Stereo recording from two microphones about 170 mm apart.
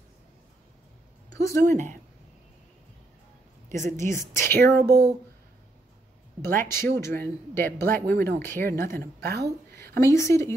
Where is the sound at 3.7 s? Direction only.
45° right (ahead or behind).